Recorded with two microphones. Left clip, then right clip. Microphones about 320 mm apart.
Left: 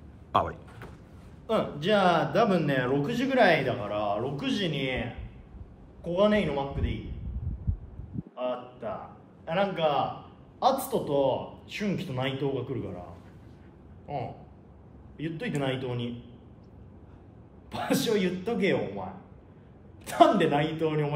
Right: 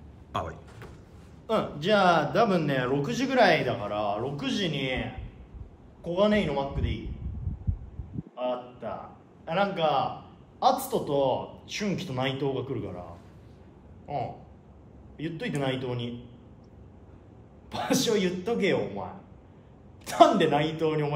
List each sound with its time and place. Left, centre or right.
0.3 s a sound: centre
1.5 s a man's voice: centre
8.4 s a man's voice: centre
14.0 s a man's voice: centre
17.6 s a man's voice: centre
20.1 s a man's voice: centre